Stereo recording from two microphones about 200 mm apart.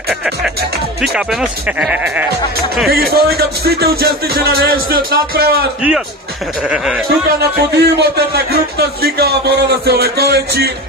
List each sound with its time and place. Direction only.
1.0 s speech: 5° right (ahead or behind)
2.9 s speech: 50° right (ahead or behind)
5.8 s speech: 5° right (ahead or behind)
7.7 s speech: 55° right (ahead or behind)